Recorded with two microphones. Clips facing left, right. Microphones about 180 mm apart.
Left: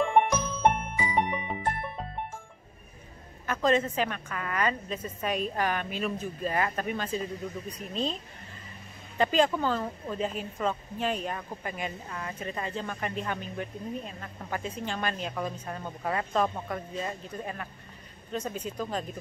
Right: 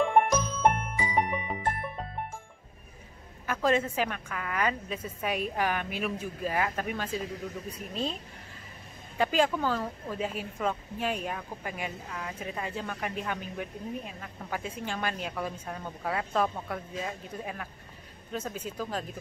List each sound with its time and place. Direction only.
0.0 s jingle: 5° right (ahead or behind)
1.1 s music: centre (ahead or behind)
3.4 s a woman's voice: 10° right (ahead or behind)
9.2 s a woman's voice: 5° right (ahead or behind)